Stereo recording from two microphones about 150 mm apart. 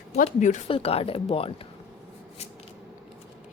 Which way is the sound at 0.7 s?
40° left (ahead or behind).